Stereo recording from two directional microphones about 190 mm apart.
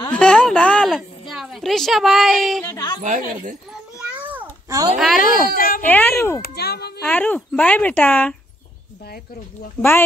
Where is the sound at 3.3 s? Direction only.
45° right (ahead or behind).